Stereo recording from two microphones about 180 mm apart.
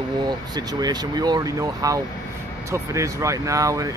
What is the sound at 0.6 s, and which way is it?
Speech, 20° right (ahead or behind).